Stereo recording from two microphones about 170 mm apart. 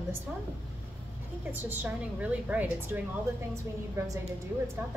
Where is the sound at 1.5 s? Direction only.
10° right (ahead or behind).